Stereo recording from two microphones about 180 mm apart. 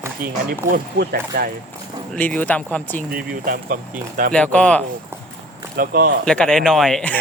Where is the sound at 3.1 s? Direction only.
55° right (ahead or behind).